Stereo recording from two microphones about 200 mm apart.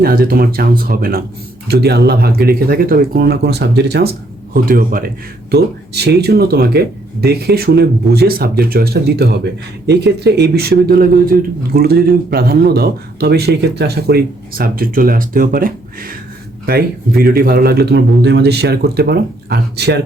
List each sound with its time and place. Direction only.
0.0 s speech: 50° right (ahead or behind)